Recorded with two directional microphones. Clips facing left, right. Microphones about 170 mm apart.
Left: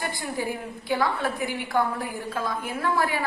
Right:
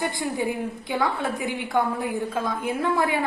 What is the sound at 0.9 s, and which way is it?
A woman's voice, 20° right (ahead or behind).